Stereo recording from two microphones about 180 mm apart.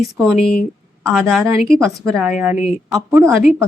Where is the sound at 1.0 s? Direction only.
Centre (ahead or behind).